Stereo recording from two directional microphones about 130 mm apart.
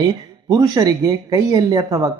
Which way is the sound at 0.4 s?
30° right (ahead or behind).